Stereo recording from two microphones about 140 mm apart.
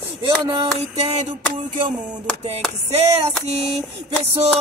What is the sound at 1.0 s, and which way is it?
Music, 50° right (ahead or behind).